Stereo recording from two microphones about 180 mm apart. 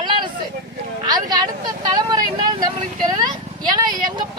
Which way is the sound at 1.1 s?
20° right (ahead or behind).